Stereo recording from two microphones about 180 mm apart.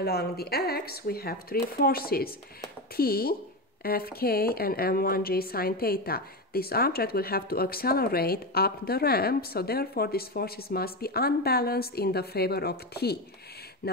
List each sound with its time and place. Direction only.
0.0 s speech: 60° left (ahead or behind)